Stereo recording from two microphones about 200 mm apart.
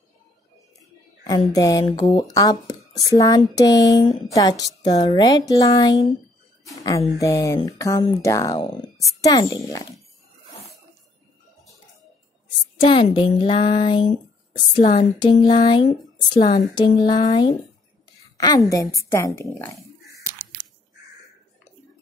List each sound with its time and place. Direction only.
1.5 s speech: 15° left (ahead or behind)
7.2 s speech: 15° left (ahead or behind)
12.8 s speech: 25° left (ahead or behind)
20.0 s biting: centre (ahead or behind)